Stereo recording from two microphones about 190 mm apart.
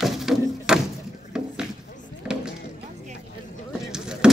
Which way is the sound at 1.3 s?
5° right (ahead or behind).